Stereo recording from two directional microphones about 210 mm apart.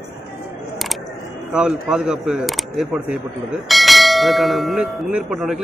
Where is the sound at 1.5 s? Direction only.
5° right (ahead or behind).